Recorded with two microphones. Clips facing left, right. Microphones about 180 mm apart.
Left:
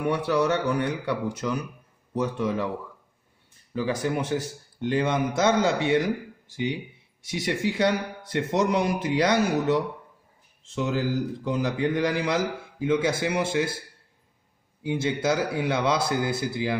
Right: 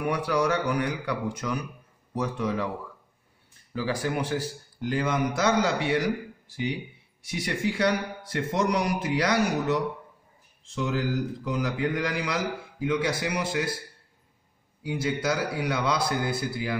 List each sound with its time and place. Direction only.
0.0 s a man's voice: 25° left (ahead or behind)
3.8 s a man's voice: 20° left (ahead or behind)
14.8 s a man's voice: 25° left (ahead or behind)